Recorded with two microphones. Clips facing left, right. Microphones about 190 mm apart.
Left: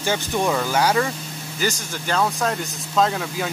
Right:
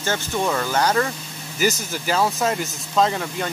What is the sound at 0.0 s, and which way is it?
Speech, 15° left (ahead or behind).